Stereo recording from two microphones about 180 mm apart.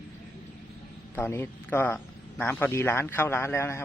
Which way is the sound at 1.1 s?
10° left (ahead or behind).